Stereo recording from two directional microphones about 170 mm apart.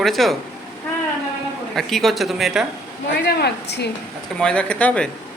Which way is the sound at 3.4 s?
80° left.